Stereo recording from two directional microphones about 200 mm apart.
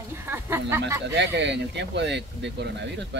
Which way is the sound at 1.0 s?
60° right (ahead or behind).